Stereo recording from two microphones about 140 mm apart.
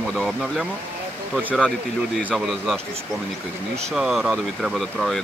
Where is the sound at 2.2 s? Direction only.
10° right (ahead or behind).